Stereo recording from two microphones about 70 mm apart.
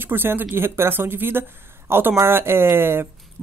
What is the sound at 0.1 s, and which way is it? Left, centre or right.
Speech, right.